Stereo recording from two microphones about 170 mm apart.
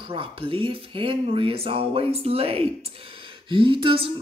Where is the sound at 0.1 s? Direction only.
30° right (ahead or behind).